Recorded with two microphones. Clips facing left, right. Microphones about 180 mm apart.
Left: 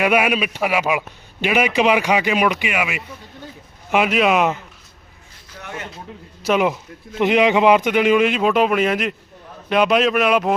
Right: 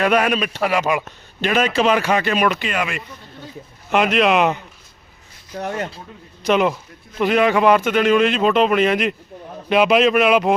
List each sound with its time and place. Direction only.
0.0 s a man's voice: 10° left (ahead or behind)
5.5 s speech: 40° right (ahead or behind)
6.4 s a man's voice: 10° left (ahead or behind)
7.2 s a man's voice: 20° left (ahead or behind); by 10.5 s centre (ahead or behind)